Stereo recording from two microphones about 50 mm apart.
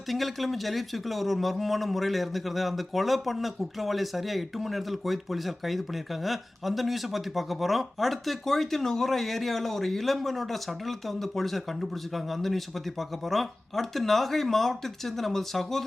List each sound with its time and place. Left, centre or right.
0.1 s speech: centre